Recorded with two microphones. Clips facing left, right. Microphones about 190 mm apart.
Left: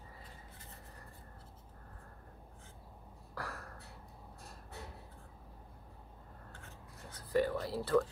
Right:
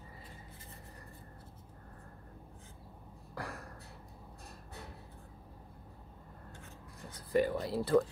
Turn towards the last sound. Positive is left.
turn(degrees=-15)  # may be behind; listen again after turning